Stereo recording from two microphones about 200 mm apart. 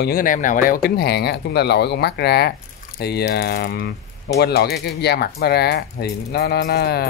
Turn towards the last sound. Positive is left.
turn(degrees=50)  # may be behind; listen again after turning